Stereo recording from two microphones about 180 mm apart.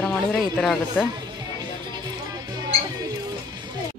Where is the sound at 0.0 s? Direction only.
Centre (ahead or behind).